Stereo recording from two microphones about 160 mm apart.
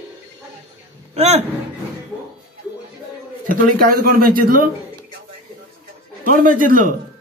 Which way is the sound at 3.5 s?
60° right (ahead or behind).